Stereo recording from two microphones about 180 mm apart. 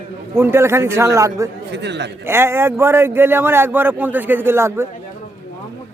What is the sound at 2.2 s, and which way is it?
A man's voice, 15° right (ahead or behind).